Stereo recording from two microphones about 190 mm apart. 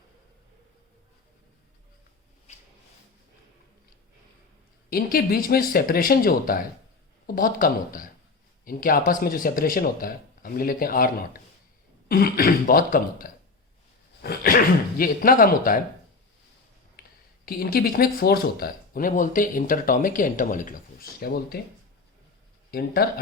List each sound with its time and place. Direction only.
4.9 s speech: 50° left (ahead or behind)
17.0 s speech: 50° left (ahead or behind)
22.7 s speech: 55° left (ahead or behind)